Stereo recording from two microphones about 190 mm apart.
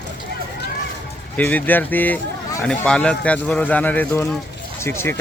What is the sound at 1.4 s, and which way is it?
Speech, 10° left (ahead or behind).